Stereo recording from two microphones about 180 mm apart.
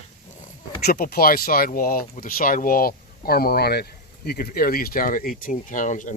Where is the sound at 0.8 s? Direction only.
55° left (ahead or behind).